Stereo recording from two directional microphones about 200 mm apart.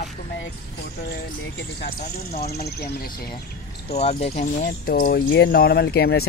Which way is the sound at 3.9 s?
30° left (ahead or behind).